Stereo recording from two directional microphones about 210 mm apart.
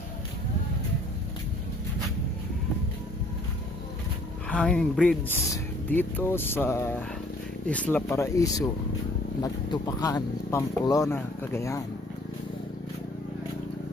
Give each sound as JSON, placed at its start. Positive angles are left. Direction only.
{"t": 4.5, "sound": "speech", "side_deg": 5}